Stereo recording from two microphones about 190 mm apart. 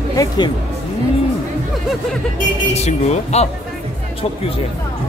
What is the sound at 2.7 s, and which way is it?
Speech, 35° left (ahead or behind).